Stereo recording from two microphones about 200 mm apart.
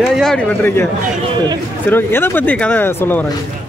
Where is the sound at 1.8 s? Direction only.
10° left (ahead or behind).